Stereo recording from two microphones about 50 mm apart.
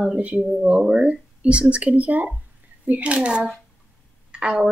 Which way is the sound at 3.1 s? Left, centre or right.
Right.